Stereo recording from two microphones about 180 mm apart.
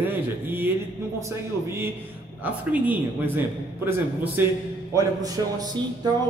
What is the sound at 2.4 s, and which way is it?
A man's voice, 10° right (ahead or behind).